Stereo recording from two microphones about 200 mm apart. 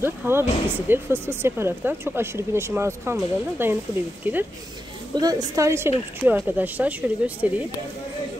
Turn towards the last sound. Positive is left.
turn(degrees=-10)  # may be behind; listen again after turning